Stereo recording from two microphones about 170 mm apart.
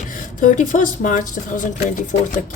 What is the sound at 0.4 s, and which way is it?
Speech, 50° left (ahead or behind).